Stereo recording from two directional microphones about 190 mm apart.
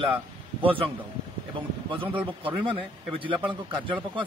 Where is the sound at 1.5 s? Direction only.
25° right (ahead or behind).